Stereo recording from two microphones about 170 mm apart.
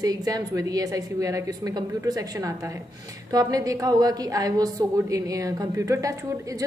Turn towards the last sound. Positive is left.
turn(degrees=-20)  # may be behind; listen again after turning